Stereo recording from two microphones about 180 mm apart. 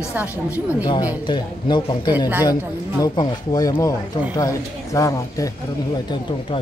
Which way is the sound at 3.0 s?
25° left (ahead or behind).